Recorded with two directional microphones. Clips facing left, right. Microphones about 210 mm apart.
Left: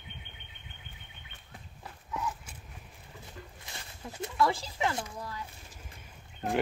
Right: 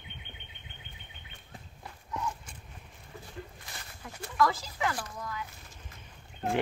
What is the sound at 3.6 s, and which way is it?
Speech, 25° left (ahead or behind).